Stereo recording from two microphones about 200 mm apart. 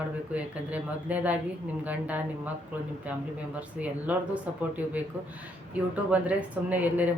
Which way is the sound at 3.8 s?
5° right (ahead or behind).